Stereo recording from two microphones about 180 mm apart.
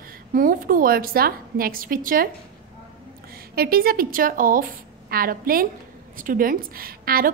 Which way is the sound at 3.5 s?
55° right (ahead or behind).